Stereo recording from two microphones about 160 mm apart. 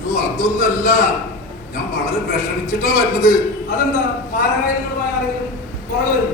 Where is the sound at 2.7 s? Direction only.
55° left (ahead or behind).